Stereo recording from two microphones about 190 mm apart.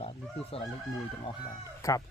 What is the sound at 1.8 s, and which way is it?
Speech, 15° left (ahead or behind).